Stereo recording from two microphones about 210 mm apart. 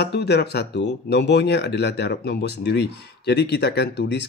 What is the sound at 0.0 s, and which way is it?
Speech, 50° left (ahead or behind).